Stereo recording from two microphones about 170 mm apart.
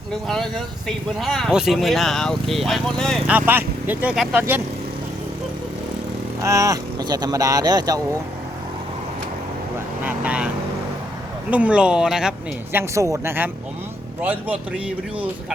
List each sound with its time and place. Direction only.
0.3 s speech: centre (ahead or behind)
3.3 s speech: 10° right (ahead or behind)
6.4 s speech: 20° right (ahead or behind)
10.0 s speech: 10° right (ahead or behind)
11.5 s speech: 5° right (ahead or behind)
12.7 s speech: 15° right (ahead or behind)